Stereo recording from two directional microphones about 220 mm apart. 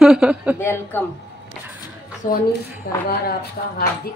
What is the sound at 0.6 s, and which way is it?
Speech, 10° left (ahead or behind).